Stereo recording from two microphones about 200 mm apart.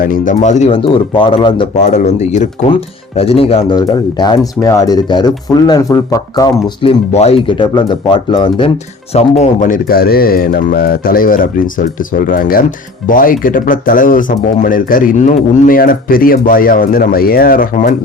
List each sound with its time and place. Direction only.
0.0 s speech: 40° left (ahead or behind); by 1.6 s 25° left (ahead or behind)
1.8 s speech: 35° left (ahead or behind); by 6.9 s 20° left (ahead or behind)
7.1 s speech: 30° left (ahead or behind)
9.1 s speech: 35° left (ahead or behind)